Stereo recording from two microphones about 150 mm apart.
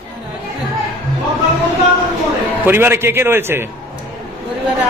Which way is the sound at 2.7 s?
15° right (ahead or behind).